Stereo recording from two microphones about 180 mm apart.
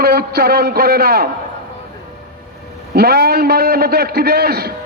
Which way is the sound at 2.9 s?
60° right (ahead or behind).